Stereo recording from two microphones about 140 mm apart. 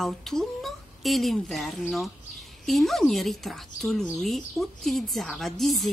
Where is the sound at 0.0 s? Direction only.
Centre (ahead or behind).